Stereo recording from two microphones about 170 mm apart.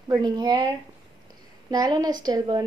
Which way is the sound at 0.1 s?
25° right (ahead or behind).